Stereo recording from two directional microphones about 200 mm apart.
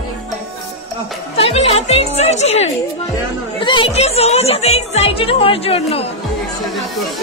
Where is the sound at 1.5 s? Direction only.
30° left (ahead or behind).